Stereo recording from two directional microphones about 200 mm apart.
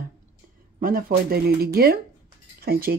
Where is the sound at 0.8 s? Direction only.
45° right (ahead or behind).